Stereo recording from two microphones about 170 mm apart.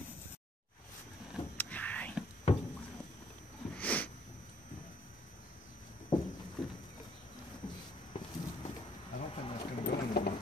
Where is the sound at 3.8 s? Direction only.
10° left (ahead or behind).